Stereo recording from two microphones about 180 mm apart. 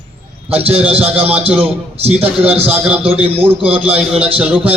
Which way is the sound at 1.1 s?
10° right (ahead or behind).